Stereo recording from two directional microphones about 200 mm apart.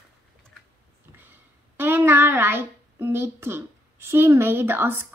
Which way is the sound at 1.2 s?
10° right (ahead or behind).